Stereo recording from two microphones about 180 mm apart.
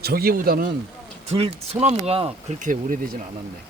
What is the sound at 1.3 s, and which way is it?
Speech, 35° right (ahead or behind).